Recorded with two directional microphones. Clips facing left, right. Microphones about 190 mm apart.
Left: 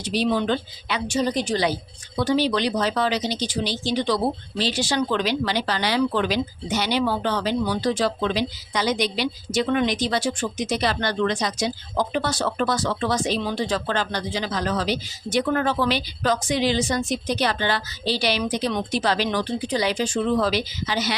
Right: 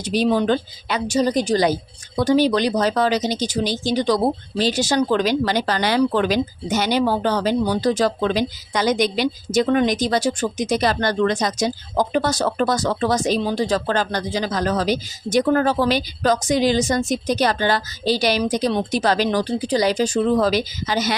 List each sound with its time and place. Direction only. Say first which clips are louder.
0.0 s a woman's voice: right 4 dB; 45° right (ahead or behind)